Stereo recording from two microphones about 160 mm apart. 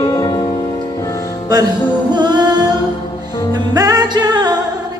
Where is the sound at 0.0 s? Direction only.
25° left (ahead or behind).